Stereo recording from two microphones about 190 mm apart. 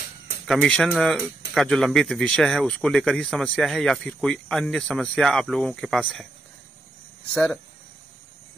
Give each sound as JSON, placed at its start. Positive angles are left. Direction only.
{"t": 0.5, "sound": "speech", "side_deg": 5}
{"t": 7.3, "sound": "speech", "side_deg": 5}